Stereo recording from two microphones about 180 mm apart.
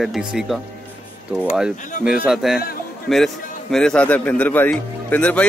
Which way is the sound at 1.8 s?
45° left (ahead or behind).